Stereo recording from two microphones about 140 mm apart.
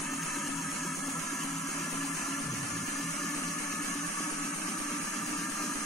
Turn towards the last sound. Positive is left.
turn(degrees=0)  # may be behind; listen again after turning